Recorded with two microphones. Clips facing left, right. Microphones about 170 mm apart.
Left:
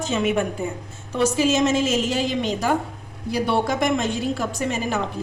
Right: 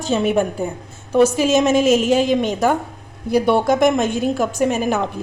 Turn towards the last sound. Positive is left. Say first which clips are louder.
# right 6 dB
turn(degrees=-50)  # may be behind; listen again after turning